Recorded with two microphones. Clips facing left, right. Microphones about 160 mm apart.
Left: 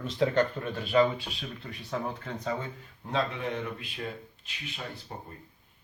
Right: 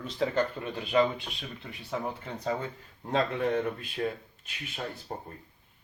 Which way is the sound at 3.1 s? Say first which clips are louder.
Right 3 dB; 50° right (ahead or behind).